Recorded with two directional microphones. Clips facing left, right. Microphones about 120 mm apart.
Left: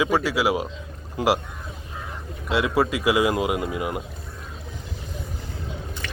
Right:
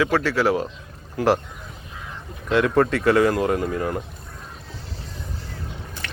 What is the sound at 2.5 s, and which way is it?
Speech, 5° left (ahead or behind).